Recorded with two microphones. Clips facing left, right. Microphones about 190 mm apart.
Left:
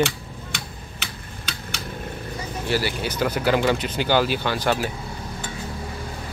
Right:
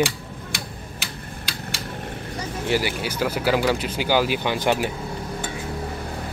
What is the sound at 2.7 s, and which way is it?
Speech, 15° right (ahead or behind).